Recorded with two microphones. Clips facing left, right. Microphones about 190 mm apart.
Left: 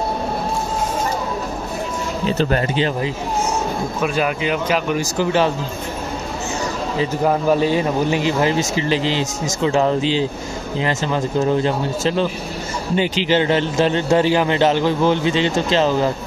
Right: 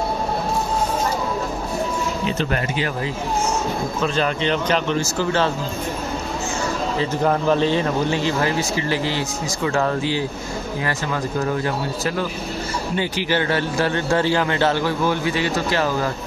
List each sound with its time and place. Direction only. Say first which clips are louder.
2.2 s speech: left 8 dB; 35° left (ahead or behind)
4.0 s speech: left 1 dB; 10° left (ahead or behind)
7.0 s a man's voice: left 3 dB; 10° left (ahead or behind)